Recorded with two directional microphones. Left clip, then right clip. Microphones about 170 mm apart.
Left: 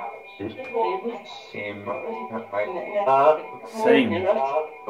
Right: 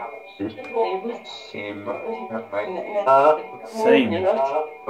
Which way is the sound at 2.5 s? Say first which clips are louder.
Left 1 dB; 45° right (ahead or behind).